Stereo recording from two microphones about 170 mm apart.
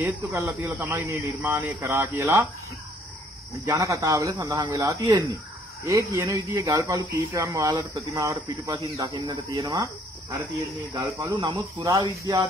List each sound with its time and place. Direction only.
0.0 s speech: 15° right (ahead or behind)
3.5 s speech: 20° right (ahead or behind)
10.9 s speech: 20° right (ahead or behind)